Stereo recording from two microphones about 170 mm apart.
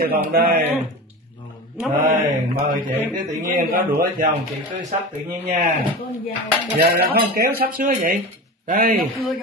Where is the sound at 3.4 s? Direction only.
60° right (ahead or behind).